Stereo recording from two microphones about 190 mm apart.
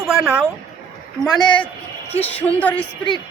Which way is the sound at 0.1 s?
5° right (ahead or behind).